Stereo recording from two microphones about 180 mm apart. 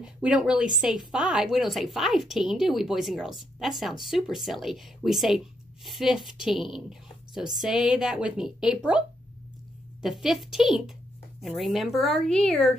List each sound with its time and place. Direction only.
0.0 s a woman's voice: 5° right (ahead or behind)
10.0 s a woman's voice: centre (ahead or behind)